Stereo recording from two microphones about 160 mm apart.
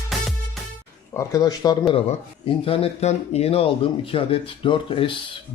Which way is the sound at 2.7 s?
35° left (ahead or behind).